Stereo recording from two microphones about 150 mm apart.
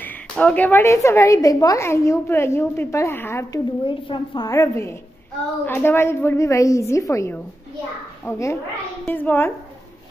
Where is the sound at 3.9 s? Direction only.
35° left (ahead or behind).